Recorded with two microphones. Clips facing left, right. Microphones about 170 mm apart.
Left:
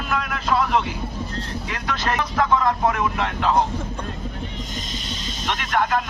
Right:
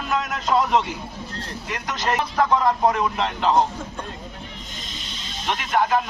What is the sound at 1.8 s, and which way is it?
Speech, 15° right (ahead or behind).